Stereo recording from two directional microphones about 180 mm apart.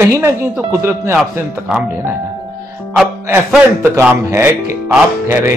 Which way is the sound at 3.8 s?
15° right (ahead or behind).